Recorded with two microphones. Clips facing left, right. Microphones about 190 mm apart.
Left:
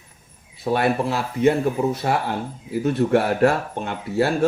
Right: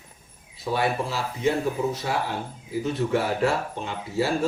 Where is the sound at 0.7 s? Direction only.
60° left (ahead or behind).